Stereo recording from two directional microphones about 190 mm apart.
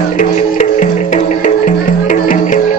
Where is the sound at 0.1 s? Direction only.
40° left (ahead or behind).